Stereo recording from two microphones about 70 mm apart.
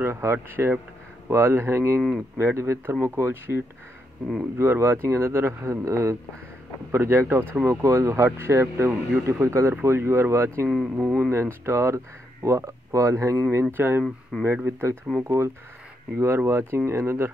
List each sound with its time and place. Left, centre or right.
0.0 s speech: right
13.7 s speech: right